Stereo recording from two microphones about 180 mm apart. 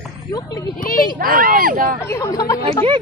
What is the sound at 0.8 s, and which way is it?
Speech, 50° left (ahead or behind).